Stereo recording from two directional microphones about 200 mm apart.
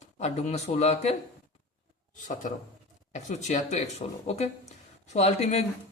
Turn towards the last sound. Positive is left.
turn(degrees=35)  # may be behind; listen again after turning